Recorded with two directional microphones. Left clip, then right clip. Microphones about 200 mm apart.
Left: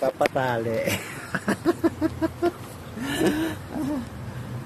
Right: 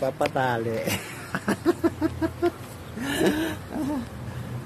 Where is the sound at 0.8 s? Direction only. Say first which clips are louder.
Left 3 dB; centre (ahead or behind).